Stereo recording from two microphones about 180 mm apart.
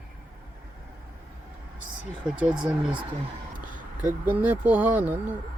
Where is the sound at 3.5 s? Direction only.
45° right (ahead or behind).